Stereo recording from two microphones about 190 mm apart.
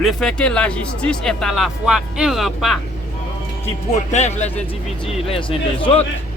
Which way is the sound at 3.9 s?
35° left (ahead or behind).